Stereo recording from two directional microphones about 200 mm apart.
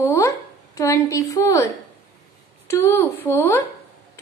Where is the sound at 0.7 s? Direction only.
15° left (ahead or behind).